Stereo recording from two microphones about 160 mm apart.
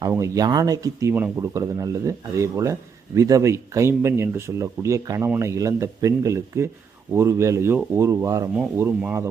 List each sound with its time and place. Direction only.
0.0 s speech: 20° right (ahead or behind)